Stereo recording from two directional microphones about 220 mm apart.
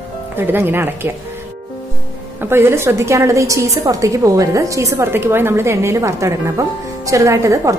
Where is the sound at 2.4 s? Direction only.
10° right (ahead or behind).